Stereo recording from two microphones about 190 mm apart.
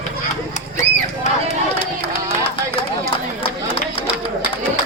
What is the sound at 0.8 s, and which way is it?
Crowd, 35° left (ahead or behind).